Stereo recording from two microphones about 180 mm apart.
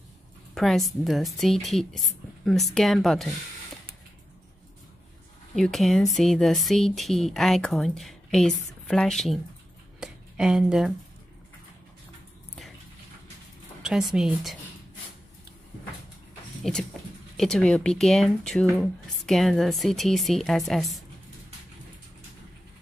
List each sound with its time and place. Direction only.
0.6 s speech: centre (ahead or behind)
5.6 s speech: centre (ahead or behind)
9.9 s a sound: 5° right (ahead or behind)
13.8 s speech: 5° right (ahead or behind)
17.4 s speech: 5° left (ahead or behind)